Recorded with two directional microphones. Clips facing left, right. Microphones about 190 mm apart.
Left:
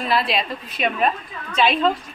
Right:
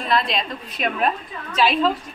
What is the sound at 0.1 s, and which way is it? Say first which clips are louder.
A woman's voice: even; 5° left (ahead or behind).